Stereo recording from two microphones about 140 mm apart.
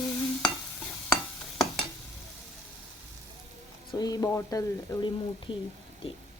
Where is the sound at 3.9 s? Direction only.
30° left (ahead or behind).